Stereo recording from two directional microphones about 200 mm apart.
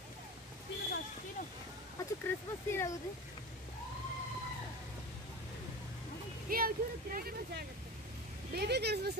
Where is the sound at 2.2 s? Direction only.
10° left (ahead or behind).